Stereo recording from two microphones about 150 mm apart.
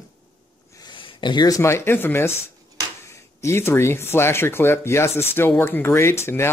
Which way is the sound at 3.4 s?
15° left (ahead or behind).